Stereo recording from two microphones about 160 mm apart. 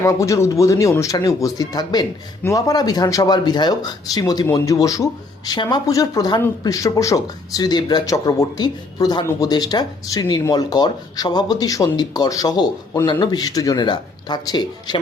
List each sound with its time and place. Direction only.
0.0 s speech: 20° left (ahead or behind)